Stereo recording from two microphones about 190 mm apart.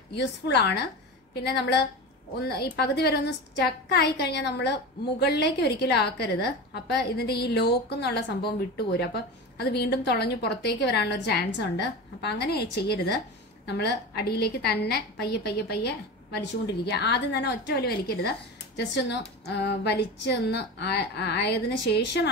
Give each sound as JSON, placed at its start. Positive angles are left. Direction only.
{"t": 0.1, "sound": "a woman's voice", "side_deg": 60}